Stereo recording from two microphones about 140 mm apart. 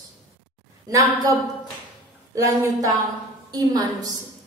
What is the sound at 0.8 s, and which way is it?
Speech, 25° right (ahead or behind).